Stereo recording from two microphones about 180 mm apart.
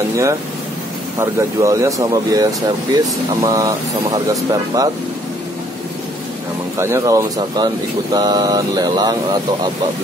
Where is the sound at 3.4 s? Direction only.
20° right (ahead or behind).